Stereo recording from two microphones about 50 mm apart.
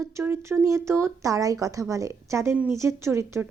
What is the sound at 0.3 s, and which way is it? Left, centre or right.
Speech, right.